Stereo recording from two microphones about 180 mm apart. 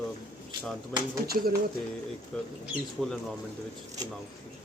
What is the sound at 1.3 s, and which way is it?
Speech, 55° right (ahead or behind).